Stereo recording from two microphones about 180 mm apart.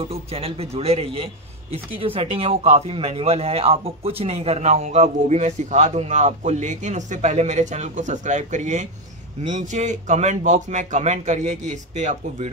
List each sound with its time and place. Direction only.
0.0 s a man's voice: 30° right (ahead or behind)